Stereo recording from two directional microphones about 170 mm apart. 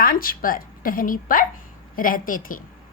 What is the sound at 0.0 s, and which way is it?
A woman's voice, 55° left (ahead or behind).